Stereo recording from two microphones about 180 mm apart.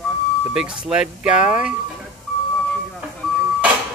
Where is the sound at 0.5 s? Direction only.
5° right (ahead or behind).